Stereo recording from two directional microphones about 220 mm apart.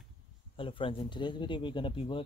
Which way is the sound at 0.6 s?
25° left (ahead or behind).